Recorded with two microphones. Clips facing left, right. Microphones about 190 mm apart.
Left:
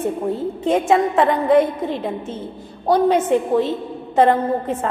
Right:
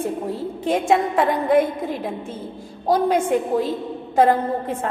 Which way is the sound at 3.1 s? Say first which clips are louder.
Left 3 dB; 10° right (ahead or behind).